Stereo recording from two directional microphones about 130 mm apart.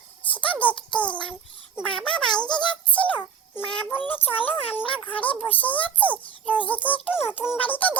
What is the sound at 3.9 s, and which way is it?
A child's voice, 15° left (ahead or behind).